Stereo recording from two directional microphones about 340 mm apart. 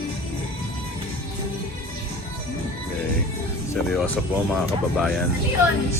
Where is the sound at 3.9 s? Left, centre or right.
Centre.